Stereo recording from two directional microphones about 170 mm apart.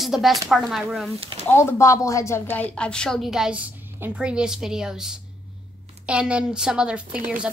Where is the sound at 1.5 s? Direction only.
15° left (ahead or behind).